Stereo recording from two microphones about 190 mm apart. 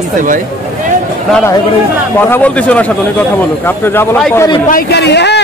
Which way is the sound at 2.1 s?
10° left (ahead or behind).